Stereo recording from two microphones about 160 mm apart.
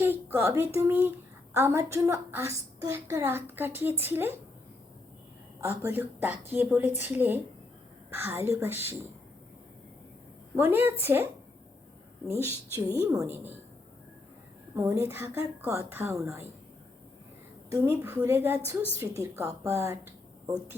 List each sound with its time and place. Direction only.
0.0 s a woman's voice: 15° right (ahead or behind)
5.5 s a woman's voice: 15° right (ahead or behind)
10.5 s a woman's voice: 15° right (ahead or behind)
13.0 s a woman's voice: 15° right (ahead or behind)
14.8 s a woman's voice: 20° right (ahead or behind)
17.7 s a woman's voice: 20° right (ahead or behind)